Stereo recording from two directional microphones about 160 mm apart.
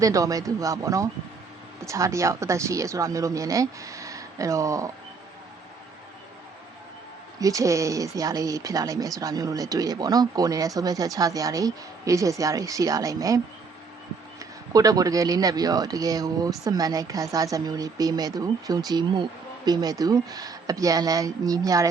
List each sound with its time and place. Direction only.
0.0 s speech: 20° right (ahead or behind)
7.3 s speech: 20° right (ahead or behind)
14.7 s speech: 20° right (ahead or behind)